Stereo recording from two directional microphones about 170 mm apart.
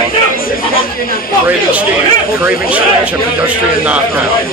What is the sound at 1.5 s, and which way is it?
A man's voice, 10° right (ahead or behind).